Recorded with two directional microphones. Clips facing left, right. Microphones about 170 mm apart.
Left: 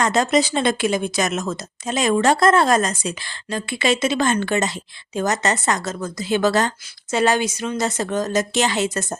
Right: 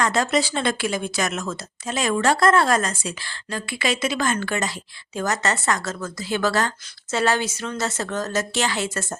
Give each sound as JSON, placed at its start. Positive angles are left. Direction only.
{"t": 0.0, "sound": "a woman's voice", "side_deg": 20}